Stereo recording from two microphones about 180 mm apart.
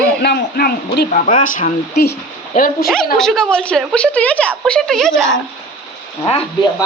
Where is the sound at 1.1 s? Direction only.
45° left (ahead or behind).